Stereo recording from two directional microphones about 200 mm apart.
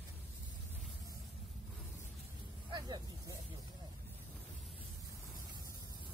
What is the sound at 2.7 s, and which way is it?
Vehicle, 20° right (ahead or behind).